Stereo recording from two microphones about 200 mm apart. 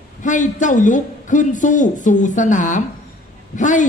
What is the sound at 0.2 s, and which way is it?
Speech, 40° left (ahead or behind).